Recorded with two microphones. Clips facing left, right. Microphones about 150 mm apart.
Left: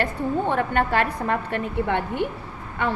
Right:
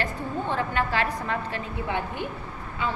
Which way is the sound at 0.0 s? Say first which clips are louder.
Left 6 dB; 55° left (ahead or behind).